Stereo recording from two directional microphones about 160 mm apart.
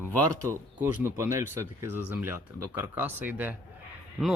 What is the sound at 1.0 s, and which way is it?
Speech, 15° right (ahead or behind).